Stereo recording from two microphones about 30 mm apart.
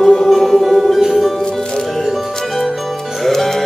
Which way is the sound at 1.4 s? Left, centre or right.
Left.